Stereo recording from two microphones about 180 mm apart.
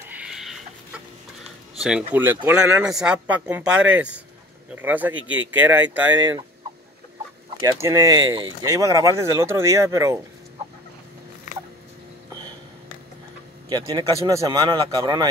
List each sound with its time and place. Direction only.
0.1 s chicken: 5° right (ahead or behind)
1.8 s speech: 5° right (ahead or behind)
7.6 s speech: 15° right (ahead or behind)
13.7 s speech: 25° right (ahead or behind)